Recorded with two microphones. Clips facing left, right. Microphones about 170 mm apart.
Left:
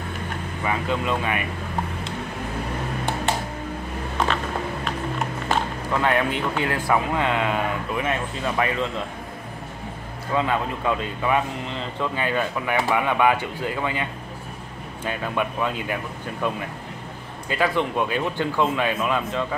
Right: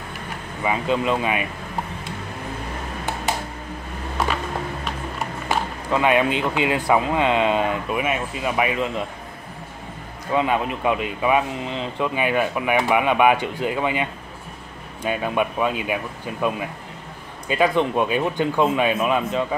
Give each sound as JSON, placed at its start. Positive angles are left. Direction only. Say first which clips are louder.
{"t": 0.7, "sound": "speech", "louder": "right 4 dB", "side_deg": -20}
{"t": 5.9, "sound": "speech", "louder": "right 4 dB", "side_deg": -15}
{"t": 10.3, "sound": "speech", "louder": "right 2 dB", "side_deg": -15}
{"t": 15.0, "sound": "speech", "louder": "right 4 dB", "side_deg": -15}